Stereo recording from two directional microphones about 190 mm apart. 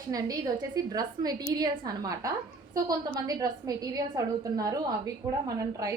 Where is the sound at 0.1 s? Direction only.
20° right (ahead or behind).